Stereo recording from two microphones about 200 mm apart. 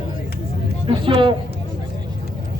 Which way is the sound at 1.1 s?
25° right (ahead or behind).